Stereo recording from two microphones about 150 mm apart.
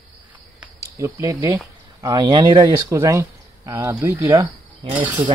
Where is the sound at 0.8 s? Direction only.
20° right (ahead or behind).